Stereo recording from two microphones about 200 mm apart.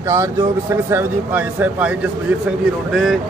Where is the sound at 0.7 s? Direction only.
10° right (ahead or behind).